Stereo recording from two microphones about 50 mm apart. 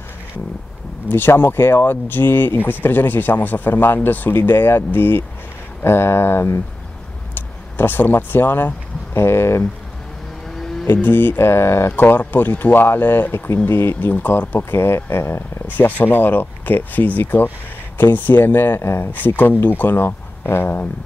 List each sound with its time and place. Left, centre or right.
1.0 s speech: left
9.1 s speech: left
10.9 s speech: left
11.9 s speech: left
14.1 s speech: left
15.6 s speech: left
18.8 s speech: left
19.1 s speech: left